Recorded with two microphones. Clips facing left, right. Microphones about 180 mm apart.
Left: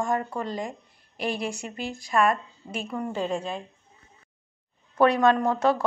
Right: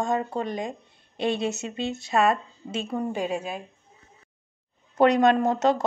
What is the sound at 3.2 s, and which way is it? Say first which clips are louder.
Speech: even; 10° right (ahead or behind).